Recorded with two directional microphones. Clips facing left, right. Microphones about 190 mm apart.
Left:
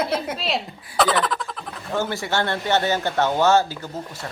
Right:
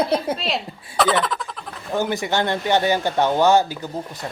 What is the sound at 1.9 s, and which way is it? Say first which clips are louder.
Speech: right 2 dB; 15° right (ahead or behind).